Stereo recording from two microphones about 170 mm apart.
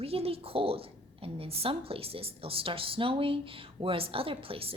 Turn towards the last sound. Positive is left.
turn(degrees=-35)  # may be behind; listen again after turning